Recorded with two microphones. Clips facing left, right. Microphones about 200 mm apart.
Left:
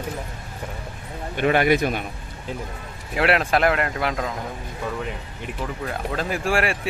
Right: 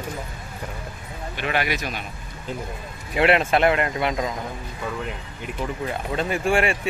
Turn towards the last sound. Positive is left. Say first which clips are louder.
# right 2 dB
turn(degrees=0)  # may be behind; listen again after turning